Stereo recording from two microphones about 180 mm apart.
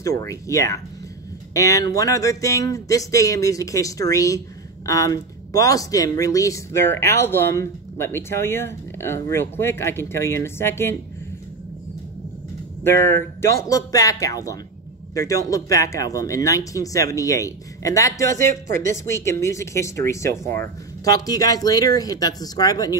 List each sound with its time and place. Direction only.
0.2 s speech: 15° left (ahead or behind)
12.8 s speech: 15° left (ahead or behind)